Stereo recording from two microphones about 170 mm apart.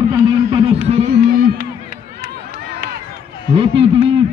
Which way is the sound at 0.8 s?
40° right (ahead or behind).